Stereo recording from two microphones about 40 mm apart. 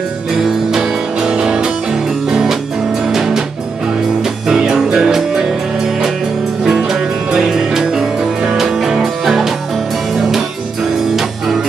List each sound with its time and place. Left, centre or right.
0.7 s music: centre
6.6 s music: centre
8.5 s music: centre